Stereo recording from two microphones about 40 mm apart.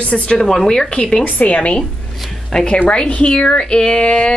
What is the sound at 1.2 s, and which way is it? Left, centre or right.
Speech, left.